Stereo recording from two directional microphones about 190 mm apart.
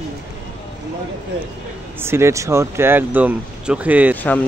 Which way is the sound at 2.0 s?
15° right (ahead or behind).